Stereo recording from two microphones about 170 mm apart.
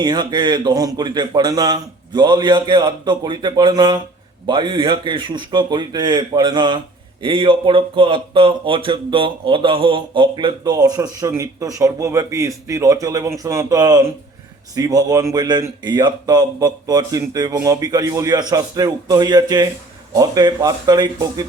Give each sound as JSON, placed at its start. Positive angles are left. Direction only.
{"t": 0.0, "sound": "speech", "side_deg": -25}